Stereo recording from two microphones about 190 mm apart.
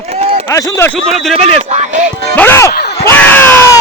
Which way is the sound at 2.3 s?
10° left (ahead or behind).